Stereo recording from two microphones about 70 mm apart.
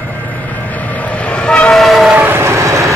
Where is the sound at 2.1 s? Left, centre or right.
Right.